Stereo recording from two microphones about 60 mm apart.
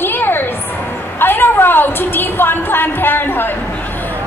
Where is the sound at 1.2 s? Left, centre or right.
Left.